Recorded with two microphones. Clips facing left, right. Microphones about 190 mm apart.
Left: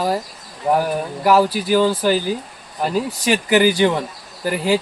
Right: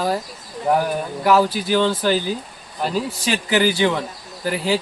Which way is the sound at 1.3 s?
10° left (ahead or behind).